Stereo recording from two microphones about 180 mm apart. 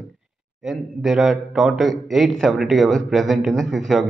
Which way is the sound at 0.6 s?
Centre (ahead or behind).